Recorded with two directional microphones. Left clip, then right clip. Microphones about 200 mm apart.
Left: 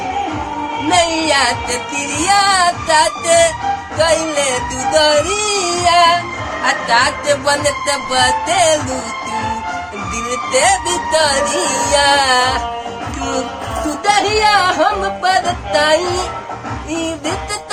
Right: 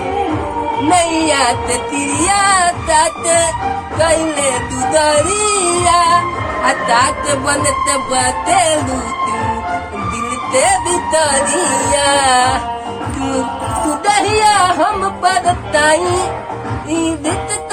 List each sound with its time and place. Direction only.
0.9 s music: 15° left (ahead or behind)
3.9 s speech: 20° left (ahead or behind)
4.9 s music: 10° left (ahead or behind)
11.1 s music: 20° left (ahead or behind)
14.0 s music: 10° left (ahead or behind)